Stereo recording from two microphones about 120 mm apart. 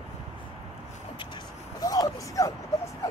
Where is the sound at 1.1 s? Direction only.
40° left (ahead or behind).